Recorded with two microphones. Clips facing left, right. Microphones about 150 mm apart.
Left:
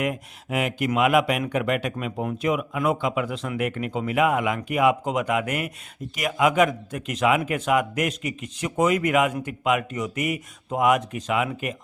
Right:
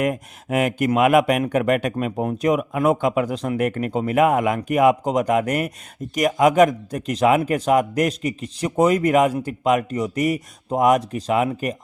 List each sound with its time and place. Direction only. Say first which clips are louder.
0.0 s a man's voice: right 4 dB; 45° right (ahead or behind)